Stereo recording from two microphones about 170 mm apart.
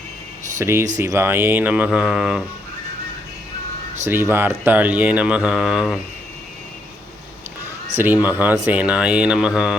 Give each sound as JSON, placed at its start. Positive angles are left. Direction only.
{"t": 0.6, "sound": "speech", "side_deg": -15}
{"t": 4.0, "sound": "speech", "side_deg": -15}
{"t": 7.9, "sound": "speech", "side_deg": -10}